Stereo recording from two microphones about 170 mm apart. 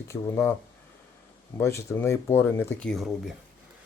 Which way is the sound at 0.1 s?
15° left (ahead or behind).